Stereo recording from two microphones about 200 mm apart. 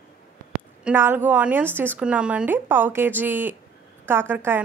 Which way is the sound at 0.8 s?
10° right (ahead or behind).